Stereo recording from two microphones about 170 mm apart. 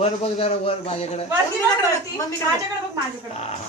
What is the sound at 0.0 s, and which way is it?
A man's voice, 35° left (ahead or behind).